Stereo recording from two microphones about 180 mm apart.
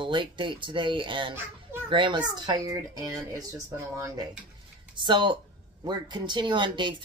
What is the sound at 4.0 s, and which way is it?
Speech, 20° right (ahead or behind).